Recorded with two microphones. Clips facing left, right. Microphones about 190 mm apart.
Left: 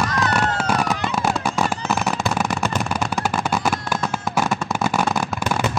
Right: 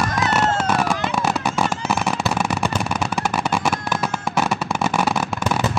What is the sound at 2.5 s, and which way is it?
Shuffling cards, 10° left (ahead or behind).